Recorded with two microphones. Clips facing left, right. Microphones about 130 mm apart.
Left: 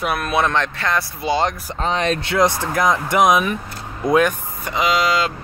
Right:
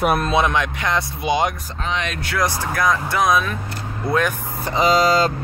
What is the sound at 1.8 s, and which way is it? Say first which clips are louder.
Speech: left 5 dB; 35° left (ahead or behind).